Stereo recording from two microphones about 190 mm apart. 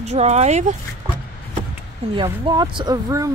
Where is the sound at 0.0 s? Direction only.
35° right (ahead or behind).